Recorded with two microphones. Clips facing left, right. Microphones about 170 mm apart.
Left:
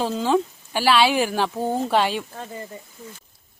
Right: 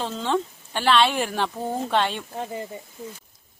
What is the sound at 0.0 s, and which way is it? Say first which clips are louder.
Speech: left 4 dB; 5° left (ahead or behind).